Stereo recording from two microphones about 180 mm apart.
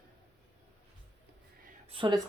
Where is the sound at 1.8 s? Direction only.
30° right (ahead or behind).